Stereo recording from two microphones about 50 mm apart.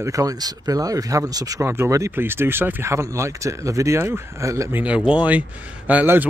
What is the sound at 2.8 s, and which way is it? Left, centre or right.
Speech, right.